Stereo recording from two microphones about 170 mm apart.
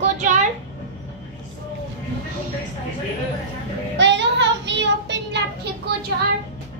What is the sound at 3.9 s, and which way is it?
Child singing, 90° right.